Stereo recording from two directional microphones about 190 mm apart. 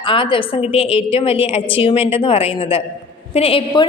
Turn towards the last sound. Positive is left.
turn(degrees=25)  # may be behind; listen again after turning